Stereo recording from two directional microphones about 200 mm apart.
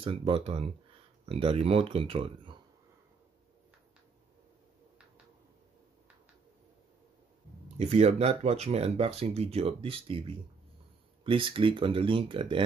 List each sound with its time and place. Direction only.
0.0 s speech: 25° right (ahead or behind)
7.7 s speech: 35° right (ahead or behind)